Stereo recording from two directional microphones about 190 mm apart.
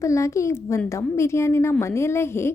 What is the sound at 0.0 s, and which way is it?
A woman's voice, 15° left (ahead or behind).